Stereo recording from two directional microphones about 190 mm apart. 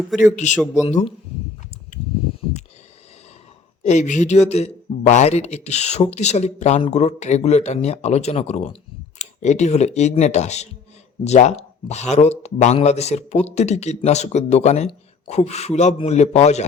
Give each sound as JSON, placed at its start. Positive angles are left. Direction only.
{"t": 0.2, "sound": "speech", "side_deg": 40}
{"t": 1.9, "sound": "a sound", "side_deg": 40}
{"t": 3.8, "sound": "speech", "side_deg": 40}